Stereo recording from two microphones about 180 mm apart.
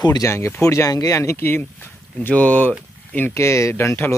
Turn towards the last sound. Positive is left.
turn(degrees=10)  # may be behind; listen again after turning